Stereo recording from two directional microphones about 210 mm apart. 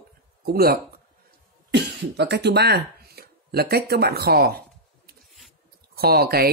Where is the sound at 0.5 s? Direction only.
45° right (ahead or behind).